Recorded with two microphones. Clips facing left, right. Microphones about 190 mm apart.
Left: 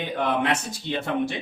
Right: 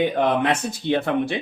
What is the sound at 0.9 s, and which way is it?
Speech, 60° right (ahead or behind).